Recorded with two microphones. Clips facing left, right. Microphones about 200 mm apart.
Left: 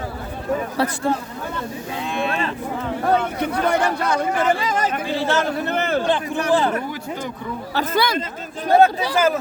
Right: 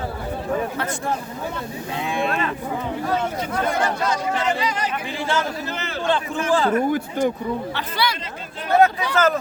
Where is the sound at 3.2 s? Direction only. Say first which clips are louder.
Left 2 dB; 65° left (ahead or behind).